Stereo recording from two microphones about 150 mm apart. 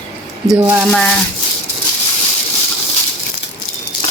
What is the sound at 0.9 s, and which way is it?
Speech, 5° left (ahead or behind).